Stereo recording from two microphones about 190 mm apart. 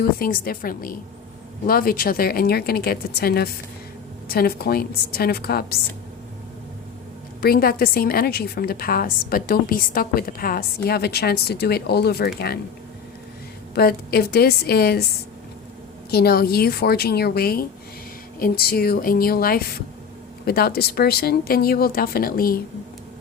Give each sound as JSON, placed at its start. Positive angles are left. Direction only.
{"t": 0.0, "sound": "a woman's voice", "side_deg": 50}
{"t": 7.4, "sound": "a woman's voice", "side_deg": 50}
{"t": 13.7, "sound": "a woman's voice", "side_deg": 55}
{"t": 16.0, "sound": "a woman's voice", "side_deg": 55}